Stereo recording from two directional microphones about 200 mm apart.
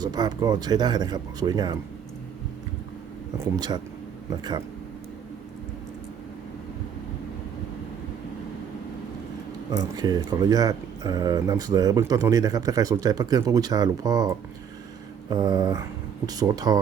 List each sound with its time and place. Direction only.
0.0 s speech: 20° right (ahead or behind)
3.3 s speech: 20° right (ahead or behind)
9.9 s speech: 20° right (ahead or behind)